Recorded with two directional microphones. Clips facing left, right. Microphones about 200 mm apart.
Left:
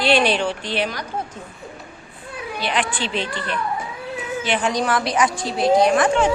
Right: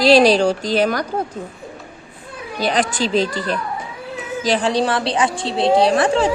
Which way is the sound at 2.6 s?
40° right (ahead or behind).